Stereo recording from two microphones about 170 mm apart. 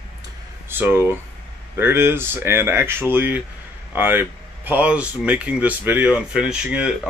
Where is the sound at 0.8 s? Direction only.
10° right (ahead or behind).